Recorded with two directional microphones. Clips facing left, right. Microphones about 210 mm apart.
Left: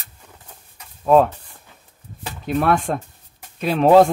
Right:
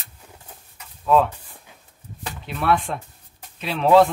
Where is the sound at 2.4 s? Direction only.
45° left (ahead or behind).